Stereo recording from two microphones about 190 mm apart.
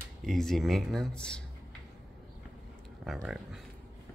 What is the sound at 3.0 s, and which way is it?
Speech, centre (ahead or behind).